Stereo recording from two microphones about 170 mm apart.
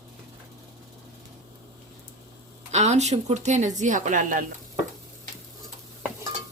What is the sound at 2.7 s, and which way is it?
Speech, 40° right (ahead or behind).